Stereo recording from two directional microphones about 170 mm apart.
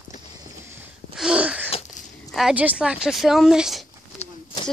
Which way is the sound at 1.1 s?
5° right (ahead or behind).